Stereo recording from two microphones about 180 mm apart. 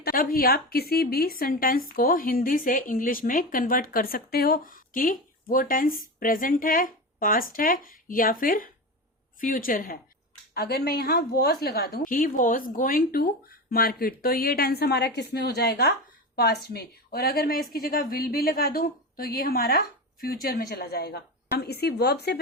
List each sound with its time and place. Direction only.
0.0 s a woman's voice: 55° left (ahead or behind)
10.5 s a woman's voice: 60° left (ahead or behind)